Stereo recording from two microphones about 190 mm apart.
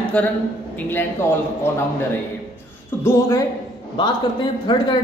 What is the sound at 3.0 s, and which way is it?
A woman's voice, 15° left (ahead or behind).